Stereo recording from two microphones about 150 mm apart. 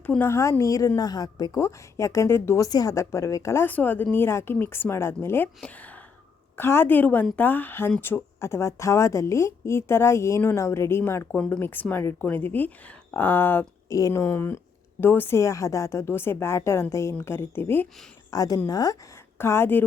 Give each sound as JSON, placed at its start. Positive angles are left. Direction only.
{"t": 0.0, "sound": "a woman's voice", "side_deg": 15}